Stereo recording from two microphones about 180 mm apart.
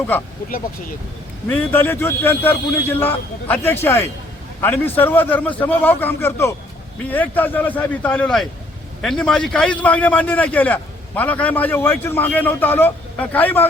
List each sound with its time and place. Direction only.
1.5 s a man's voice: 10° left (ahead or behind)